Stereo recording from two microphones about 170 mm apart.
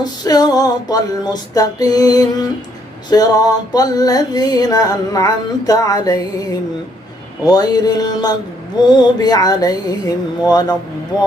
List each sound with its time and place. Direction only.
0.0 s music: 25° left (ahead or behind)